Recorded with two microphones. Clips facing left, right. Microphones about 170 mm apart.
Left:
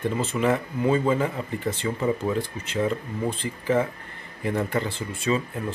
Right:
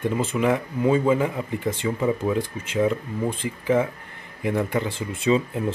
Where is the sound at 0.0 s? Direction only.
10° right (ahead or behind).